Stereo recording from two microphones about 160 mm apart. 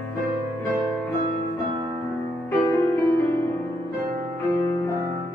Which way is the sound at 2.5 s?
15° left (ahead or behind).